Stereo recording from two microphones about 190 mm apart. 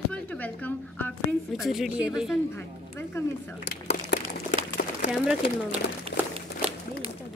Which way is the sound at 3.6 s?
60° left (ahead or behind).